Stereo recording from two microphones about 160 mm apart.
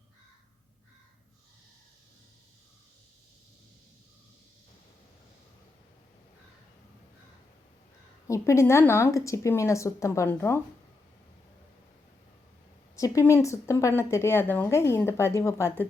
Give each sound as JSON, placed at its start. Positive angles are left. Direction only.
{"t": 8.3, "sound": "speech", "side_deg": 15}
{"t": 13.0, "sound": "speech", "side_deg": 20}